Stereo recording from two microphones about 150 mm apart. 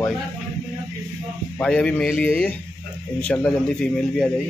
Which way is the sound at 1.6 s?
5° left (ahead or behind).